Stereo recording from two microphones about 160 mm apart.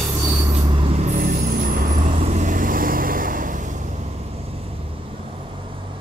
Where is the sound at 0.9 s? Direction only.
45° right (ahead or behind); by 2.1 s 60° right (ahead or behind).